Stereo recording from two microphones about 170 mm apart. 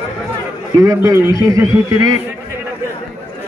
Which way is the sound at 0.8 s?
20° right (ahead or behind).